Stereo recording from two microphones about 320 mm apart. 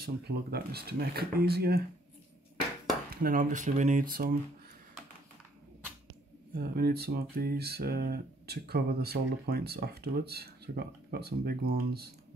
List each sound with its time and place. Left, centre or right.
0.0 s speech: right
3.1 s speech: right
6.5 s speech: right